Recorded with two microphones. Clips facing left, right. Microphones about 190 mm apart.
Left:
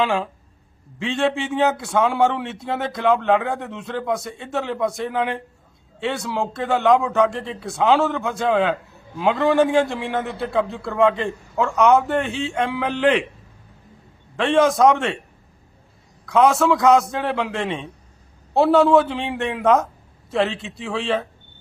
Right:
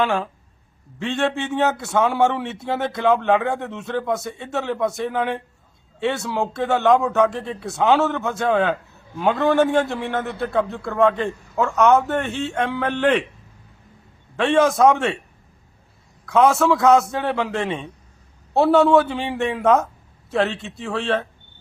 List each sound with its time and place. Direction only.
0.0 s a man's voice: centre (ahead or behind)
14.3 s a man's voice: centre (ahead or behind)
16.2 s a man's voice: centre (ahead or behind)